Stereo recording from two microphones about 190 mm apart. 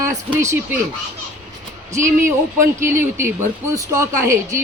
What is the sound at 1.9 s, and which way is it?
A woman's voice, 15° right (ahead or behind).